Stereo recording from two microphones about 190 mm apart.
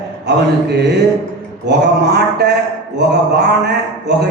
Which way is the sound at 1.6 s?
60° right (ahead or behind).